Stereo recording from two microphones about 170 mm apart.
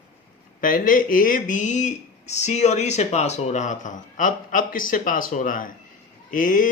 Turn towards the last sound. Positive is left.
turn(degrees=50)  # may be behind; listen again after turning